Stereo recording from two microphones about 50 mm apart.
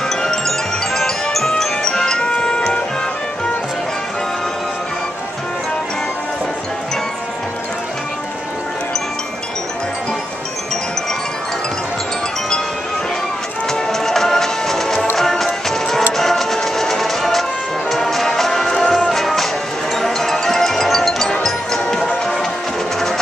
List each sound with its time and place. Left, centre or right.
0.1 s music: centre
13.7 s music: centre